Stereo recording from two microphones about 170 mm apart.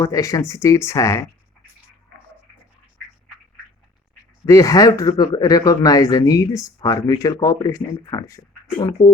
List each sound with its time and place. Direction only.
0.0 s speech: 20° left (ahead or behind)
4.4 s speech: 20° left (ahead or behind)